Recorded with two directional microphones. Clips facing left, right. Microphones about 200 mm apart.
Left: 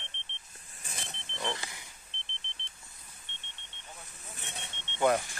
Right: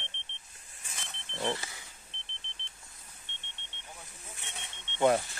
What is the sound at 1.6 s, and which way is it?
Vehicle, 15° left (ahead or behind).